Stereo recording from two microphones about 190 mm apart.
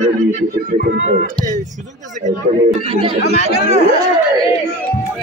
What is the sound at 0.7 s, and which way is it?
Speech, 45° right (ahead or behind).